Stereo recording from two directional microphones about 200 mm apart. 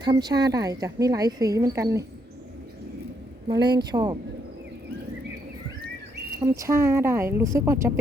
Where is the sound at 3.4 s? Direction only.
20° right (ahead or behind).